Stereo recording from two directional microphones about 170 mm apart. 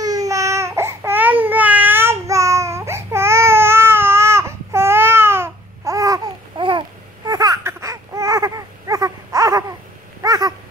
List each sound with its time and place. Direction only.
0.0 s baby cry: 20° right (ahead or behind)
10.2 s cat: 25° right (ahead or behind)